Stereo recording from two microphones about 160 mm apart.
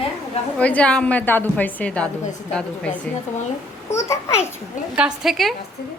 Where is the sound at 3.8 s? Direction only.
20° left (ahead or behind).